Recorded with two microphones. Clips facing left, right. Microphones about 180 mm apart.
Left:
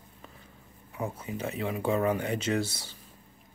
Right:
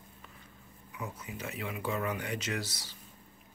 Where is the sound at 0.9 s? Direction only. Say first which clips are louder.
Left 7 dB; 30° left (ahead or behind).